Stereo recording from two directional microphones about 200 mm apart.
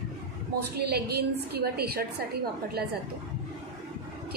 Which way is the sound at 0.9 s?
55° right (ahead or behind).